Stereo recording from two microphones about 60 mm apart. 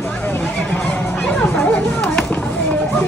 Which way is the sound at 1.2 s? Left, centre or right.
Centre.